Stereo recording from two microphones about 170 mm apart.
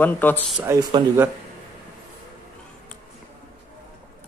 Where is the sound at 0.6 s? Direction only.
15° right (ahead or behind).